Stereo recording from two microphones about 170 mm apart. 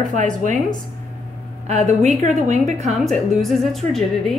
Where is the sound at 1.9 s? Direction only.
40° right (ahead or behind).